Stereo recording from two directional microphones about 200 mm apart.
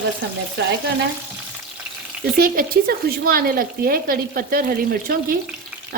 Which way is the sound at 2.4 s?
45° right (ahead or behind).